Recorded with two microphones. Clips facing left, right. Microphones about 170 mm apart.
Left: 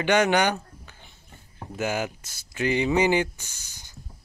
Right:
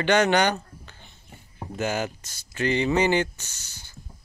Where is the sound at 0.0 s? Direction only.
10° left (ahead or behind).